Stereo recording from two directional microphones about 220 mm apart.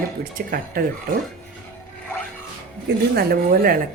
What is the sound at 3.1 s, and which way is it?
Speech, 40° right (ahead or behind).